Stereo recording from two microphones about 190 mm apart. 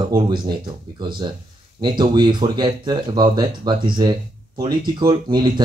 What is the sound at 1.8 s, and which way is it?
Speech, 25° right (ahead or behind).